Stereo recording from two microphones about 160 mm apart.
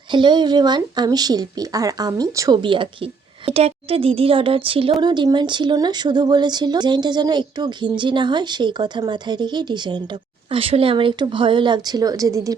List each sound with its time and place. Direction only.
0.1 s speech: 30° right (ahead or behind)